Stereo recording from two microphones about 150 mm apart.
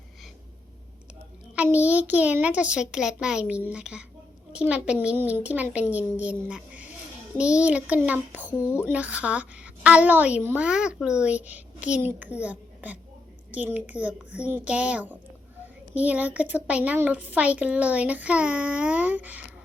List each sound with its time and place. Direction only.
1.5 s a child's voice: 10° right (ahead or behind)
8.4 s speech: 15° left (ahead or behind)
8.8 s a woman's voice: 10° right (ahead or behind)